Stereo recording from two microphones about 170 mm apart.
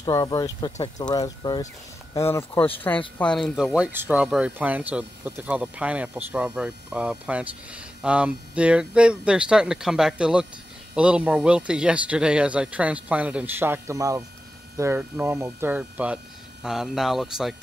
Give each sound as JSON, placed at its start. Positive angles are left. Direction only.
{"t": 0.0, "sound": "speech", "side_deg": 25}